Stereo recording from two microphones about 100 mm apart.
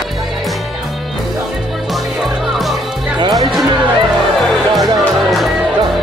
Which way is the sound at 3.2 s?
45° right (ahead or behind).